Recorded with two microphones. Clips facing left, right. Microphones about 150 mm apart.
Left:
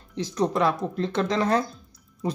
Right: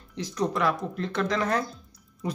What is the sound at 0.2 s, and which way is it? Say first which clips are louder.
Speech: left 3 dB; 25° left (ahead or behind).